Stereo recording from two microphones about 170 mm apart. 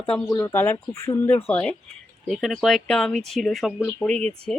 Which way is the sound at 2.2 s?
Centre (ahead or behind).